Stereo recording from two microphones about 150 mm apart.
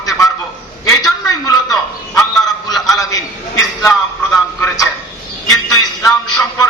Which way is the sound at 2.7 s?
Centre (ahead or behind).